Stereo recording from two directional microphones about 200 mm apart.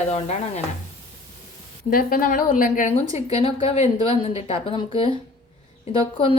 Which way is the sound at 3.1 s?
30° left (ahead or behind).